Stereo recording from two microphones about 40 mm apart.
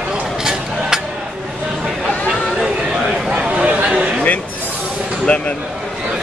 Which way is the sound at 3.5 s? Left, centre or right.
Right.